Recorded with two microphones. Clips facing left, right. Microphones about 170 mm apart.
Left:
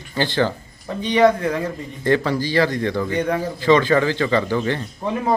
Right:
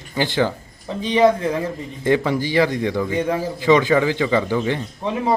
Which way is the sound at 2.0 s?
15° right (ahead or behind).